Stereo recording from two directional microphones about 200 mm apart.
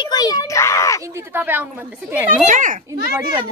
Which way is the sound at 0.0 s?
20° left (ahead or behind).